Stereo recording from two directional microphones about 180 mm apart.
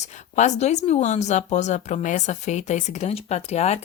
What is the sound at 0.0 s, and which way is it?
Speech, 40° left (ahead or behind).